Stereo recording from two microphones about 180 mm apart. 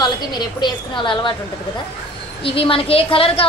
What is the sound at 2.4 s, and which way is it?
A woman's voice, 30° left (ahead or behind).